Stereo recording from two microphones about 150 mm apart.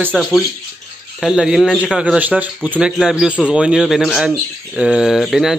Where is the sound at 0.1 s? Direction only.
5° left (ahead or behind).